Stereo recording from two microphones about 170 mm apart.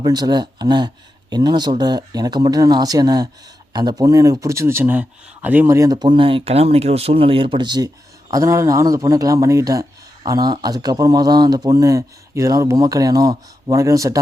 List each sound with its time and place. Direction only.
0.0 s speech: 25° right (ahead or behind)